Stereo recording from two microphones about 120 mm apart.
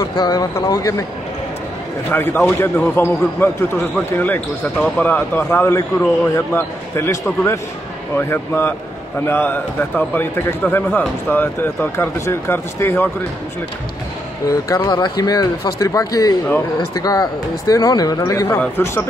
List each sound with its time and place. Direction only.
0.0 s speech: 35° left (ahead or behind)
2.0 s a man's voice: 20° left (ahead or behind)
4.7 s a man's voice: 10° left (ahead or behind)
14.5 s speech: 30° left (ahead or behind)
18.6 s a man's voice: 15° left (ahead or behind)